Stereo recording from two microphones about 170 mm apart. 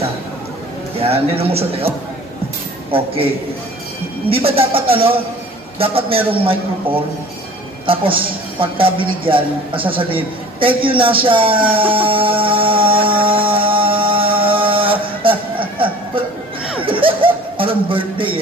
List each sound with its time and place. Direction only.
0.9 s speech: 35° right (ahead or behind)
4.3 s speech: 35° right (ahead or behind)
7.8 s speech: 30° right (ahead or behind)
11.9 s a sound: 30° right (ahead or behind)
16.8 s chuckle: 30° right (ahead or behind)